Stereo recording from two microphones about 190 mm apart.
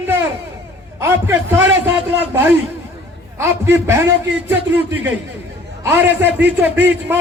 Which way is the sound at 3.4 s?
15° right (ahead or behind).